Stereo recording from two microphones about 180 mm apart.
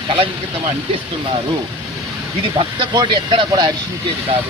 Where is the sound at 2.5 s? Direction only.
30° right (ahead or behind).